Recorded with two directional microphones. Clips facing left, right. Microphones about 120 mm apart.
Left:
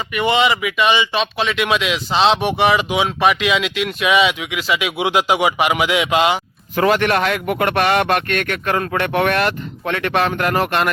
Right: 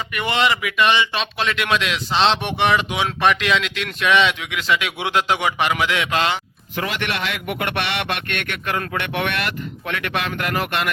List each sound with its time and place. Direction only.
0.1 s speech: centre (ahead or behind)
6.7 s a man's voice: 40° left (ahead or behind)